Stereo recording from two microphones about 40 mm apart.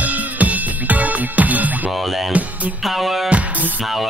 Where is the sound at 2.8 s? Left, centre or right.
Centre.